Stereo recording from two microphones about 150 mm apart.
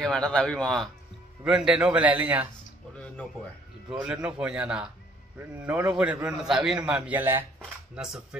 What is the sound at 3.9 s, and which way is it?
A man's voice, 5° right (ahead or behind).